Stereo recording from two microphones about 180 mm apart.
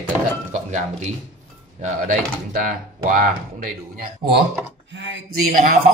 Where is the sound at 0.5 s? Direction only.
40° right (ahead or behind).